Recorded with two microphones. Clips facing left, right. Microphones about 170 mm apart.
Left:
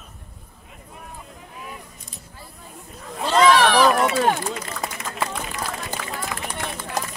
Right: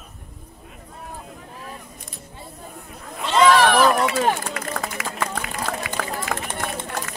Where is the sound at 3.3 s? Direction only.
Centre (ahead or behind).